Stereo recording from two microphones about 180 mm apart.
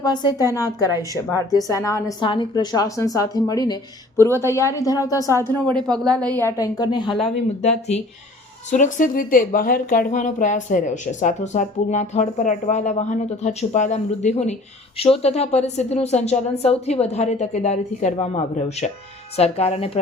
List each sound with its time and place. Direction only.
0.0 s a woman's voice: 25° left (ahead or behind)
6.1 s a woman's voice: 10° left (ahead or behind); by 20.0 s 35° left (ahead or behind)